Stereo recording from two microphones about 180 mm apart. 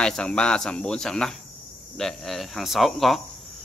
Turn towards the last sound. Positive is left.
turn(degrees=0)  # may be behind; listen again after turning